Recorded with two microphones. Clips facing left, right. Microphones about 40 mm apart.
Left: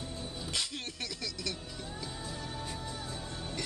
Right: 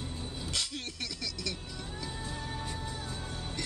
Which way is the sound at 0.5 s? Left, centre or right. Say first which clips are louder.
Right 1 dB; centre.